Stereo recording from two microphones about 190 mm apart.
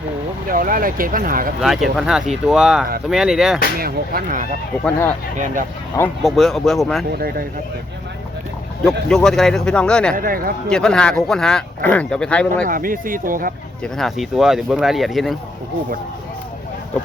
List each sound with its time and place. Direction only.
0.4 s speech: 45° right (ahead or behind)
1.6 s speech: centre (ahead or behind)
3.8 s speech: 50° right (ahead or behind)
4.9 s speech: 10° left (ahead or behind)
6.2 s speech: centre (ahead or behind)
7.1 s speech: 55° right (ahead or behind)
9.0 s speech: 5° left (ahead or behind)
10.2 s speech: 50° right (ahead or behind)
10.7 s speech: 5° left (ahead or behind)
12.6 s speech: 45° right (ahead or behind)
13.8 s speech: centre (ahead or behind)